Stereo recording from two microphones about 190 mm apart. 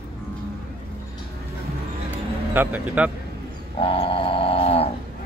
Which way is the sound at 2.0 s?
10° right (ahead or behind).